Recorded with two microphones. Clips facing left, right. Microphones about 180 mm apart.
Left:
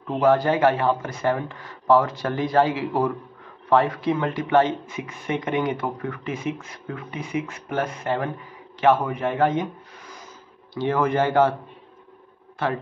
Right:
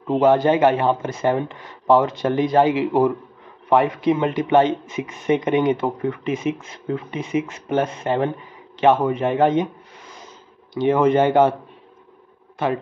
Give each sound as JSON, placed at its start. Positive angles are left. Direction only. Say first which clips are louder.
{"t": 0.1, "sound": "speech", "louder": "right 3 dB", "side_deg": -25}
{"t": 10.7, "sound": "speech", "louder": "right 6 dB", "side_deg": -20}
{"t": 12.6, "sound": "speech", "louder": "right 3 dB", "side_deg": -20}